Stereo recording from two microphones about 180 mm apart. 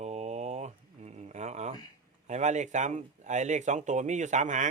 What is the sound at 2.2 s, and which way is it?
Speech, 40° right (ahead or behind).